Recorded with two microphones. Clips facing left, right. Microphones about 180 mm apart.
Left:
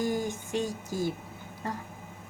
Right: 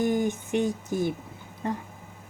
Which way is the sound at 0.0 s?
20° right (ahead or behind).